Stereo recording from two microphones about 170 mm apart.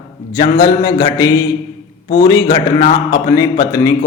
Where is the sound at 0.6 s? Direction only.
20° left (ahead or behind).